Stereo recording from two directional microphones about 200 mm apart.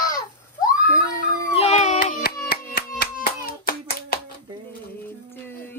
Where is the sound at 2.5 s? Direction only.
50° left (ahead or behind).